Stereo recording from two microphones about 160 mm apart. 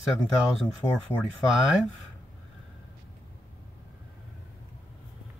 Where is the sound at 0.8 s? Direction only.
20° left (ahead or behind).